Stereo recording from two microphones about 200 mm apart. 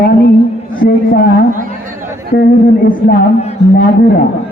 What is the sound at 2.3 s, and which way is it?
Speech, 45° left (ahead or behind).